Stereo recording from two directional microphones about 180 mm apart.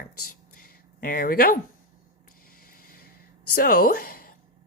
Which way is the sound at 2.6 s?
55° left (ahead or behind).